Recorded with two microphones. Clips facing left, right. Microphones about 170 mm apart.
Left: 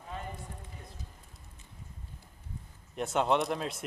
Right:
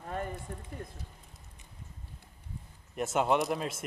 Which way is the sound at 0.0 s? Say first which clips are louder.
Right 5 dB; 55° right (ahead or behind).